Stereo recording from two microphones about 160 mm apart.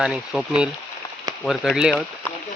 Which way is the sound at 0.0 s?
5° right (ahead or behind).